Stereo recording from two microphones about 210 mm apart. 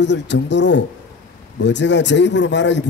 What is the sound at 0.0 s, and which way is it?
A man's voice, 55° left (ahead or behind).